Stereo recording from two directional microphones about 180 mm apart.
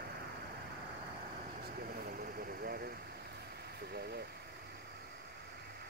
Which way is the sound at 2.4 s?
55° right (ahead or behind).